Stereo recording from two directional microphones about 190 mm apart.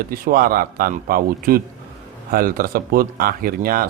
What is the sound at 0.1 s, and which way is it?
Speech, 50° right (ahead or behind).